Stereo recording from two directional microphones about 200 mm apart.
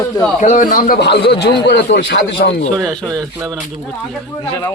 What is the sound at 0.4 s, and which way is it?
Speech, 40° left (ahead or behind).